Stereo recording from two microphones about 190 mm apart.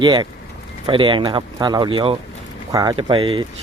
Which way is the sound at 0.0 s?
25° right (ahead or behind).